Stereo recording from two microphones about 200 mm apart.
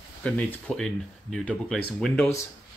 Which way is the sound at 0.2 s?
5° left (ahead or behind).